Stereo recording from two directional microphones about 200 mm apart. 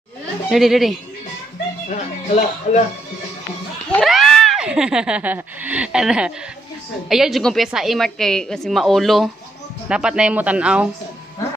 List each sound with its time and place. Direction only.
0.5 s a woman's voice: centre (ahead or behind)
1.9 s speech: 35° left (ahead or behind)
3.9 s a sound: centre (ahead or behind)
7.1 s a woman's voice: centre (ahead or behind)